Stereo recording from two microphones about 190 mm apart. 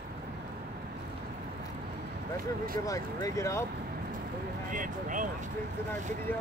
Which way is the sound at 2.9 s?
15° left (ahead or behind).